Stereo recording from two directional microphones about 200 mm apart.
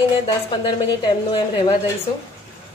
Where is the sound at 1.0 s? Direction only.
25° left (ahead or behind).